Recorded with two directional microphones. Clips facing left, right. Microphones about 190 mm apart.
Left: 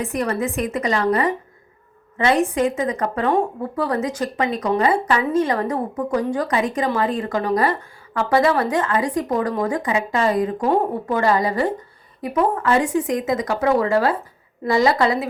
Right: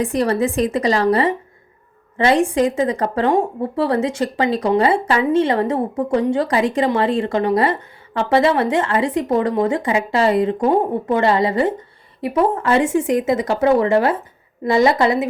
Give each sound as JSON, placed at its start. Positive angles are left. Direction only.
{"t": 0.0, "sound": "a woman's voice", "side_deg": -35}